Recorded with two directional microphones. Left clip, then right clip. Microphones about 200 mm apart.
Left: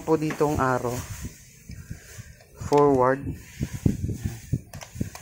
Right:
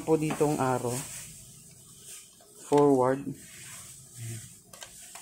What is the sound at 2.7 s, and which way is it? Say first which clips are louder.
Speech: left 3 dB; 20° left (ahead or behind).